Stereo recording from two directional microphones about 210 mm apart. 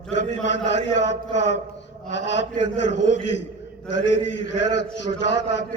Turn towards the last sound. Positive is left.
turn(degrees=60)  # may be behind; listen again after turning